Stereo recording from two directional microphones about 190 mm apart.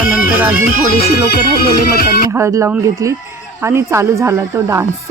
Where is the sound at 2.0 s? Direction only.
55° left (ahead or behind).